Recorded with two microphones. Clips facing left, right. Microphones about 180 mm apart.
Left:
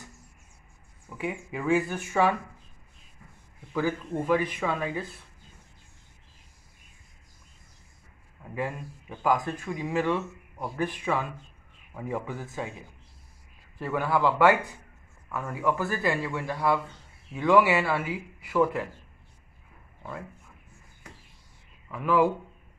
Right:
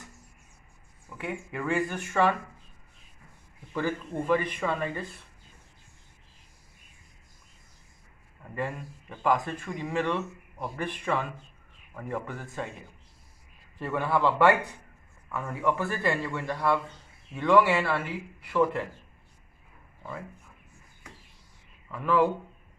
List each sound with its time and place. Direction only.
1.1 s speech: 10° left (ahead or behind)
3.7 s speech: 5° left (ahead or behind)
8.5 s speech: 10° left (ahead or behind)
20.0 s speech: centre (ahead or behind)
21.9 s speech: 10° left (ahead or behind)